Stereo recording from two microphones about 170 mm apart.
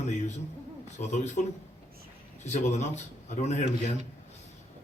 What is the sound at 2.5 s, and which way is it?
A man's voice, 45° left (ahead or behind).